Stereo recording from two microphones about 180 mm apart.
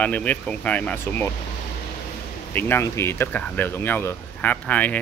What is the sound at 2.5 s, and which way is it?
Speech, 10° left (ahead or behind).